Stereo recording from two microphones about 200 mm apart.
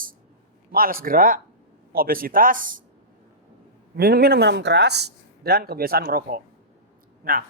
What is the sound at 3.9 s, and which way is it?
Speech, 50° right (ahead or behind).